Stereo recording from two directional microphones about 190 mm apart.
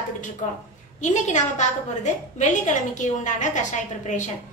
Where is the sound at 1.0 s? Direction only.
40° left (ahead or behind).